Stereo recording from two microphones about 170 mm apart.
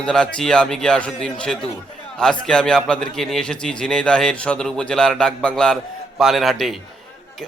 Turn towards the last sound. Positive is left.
turn(degrees=0)  # may be behind; listen again after turning